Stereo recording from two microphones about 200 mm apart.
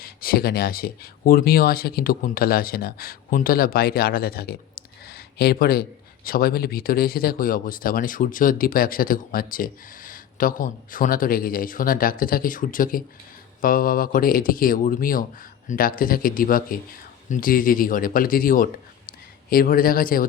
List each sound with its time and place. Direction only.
0.0 s speech: 45° left (ahead or behind)